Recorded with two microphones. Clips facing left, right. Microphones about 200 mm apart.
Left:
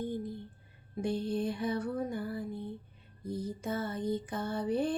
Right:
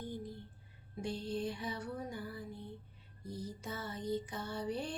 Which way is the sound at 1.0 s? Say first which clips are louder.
Left 6 dB; 55° left (ahead or behind).